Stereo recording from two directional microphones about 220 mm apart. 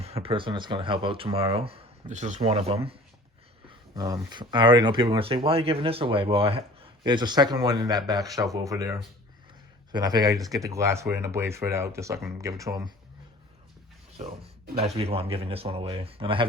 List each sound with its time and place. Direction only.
0.0 s speech: 25° right (ahead or behind)
3.7 s speech: 15° right (ahead or behind)
14.8 s speech: 25° right (ahead or behind)